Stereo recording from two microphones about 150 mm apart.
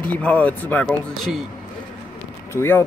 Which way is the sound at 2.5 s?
15° left (ahead or behind).